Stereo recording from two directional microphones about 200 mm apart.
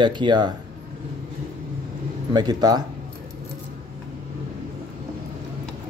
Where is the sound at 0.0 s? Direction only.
20° right (ahead or behind).